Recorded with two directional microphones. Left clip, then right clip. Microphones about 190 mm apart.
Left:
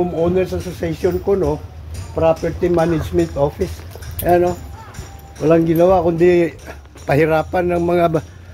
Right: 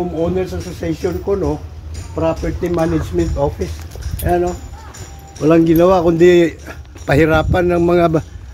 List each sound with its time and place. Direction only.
0.2 s speech: 50° left (ahead or behind)
5.4 s speech: 10° right (ahead or behind)